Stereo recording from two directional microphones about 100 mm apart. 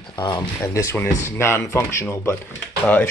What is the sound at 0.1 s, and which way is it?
Speech, 50° left (ahead or behind).